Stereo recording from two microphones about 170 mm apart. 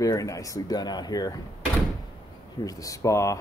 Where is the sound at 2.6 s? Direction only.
20° left (ahead or behind).